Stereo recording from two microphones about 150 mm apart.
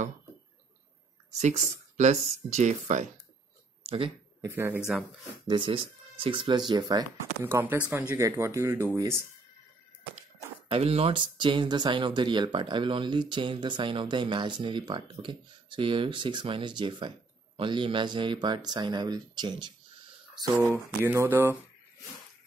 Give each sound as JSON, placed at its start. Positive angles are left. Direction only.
{"t": 1.3, "sound": "speech", "side_deg": -50}
{"t": 4.4, "sound": "speech", "side_deg": -15}
{"t": 5.5, "sound": "speech", "side_deg": -35}
{"t": 10.7, "sound": "speech", "side_deg": -40}
{"t": 20.7, "sound": "speech", "side_deg": -15}